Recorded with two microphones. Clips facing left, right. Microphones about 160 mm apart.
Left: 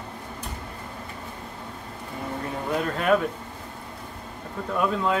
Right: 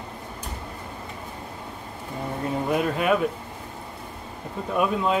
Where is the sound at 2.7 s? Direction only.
10° right (ahead or behind).